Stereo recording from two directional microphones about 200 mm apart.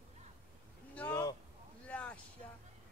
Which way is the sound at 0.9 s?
10° left (ahead or behind).